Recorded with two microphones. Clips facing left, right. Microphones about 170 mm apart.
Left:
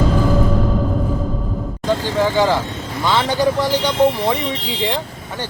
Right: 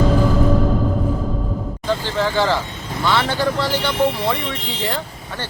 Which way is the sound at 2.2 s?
15° left (ahead or behind).